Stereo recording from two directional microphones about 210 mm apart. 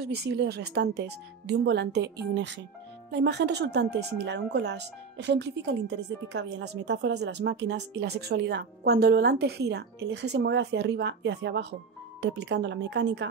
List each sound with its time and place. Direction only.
0.0 s speech: 50° right (ahead or behind)